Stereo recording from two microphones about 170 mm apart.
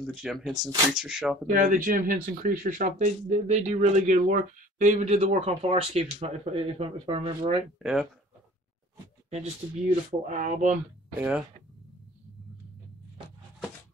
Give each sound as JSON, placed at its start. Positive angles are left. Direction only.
{"t": 0.0, "sound": "speech", "side_deg": 0}
{"t": 1.5, "sound": "speech", "side_deg": -50}
{"t": 7.8, "sound": "speech", "side_deg": 0}
{"t": 9.3, "sound": "speech", "side_deg": -40}
{"t": 11.1, "sound": "speech", "side_deg": -10}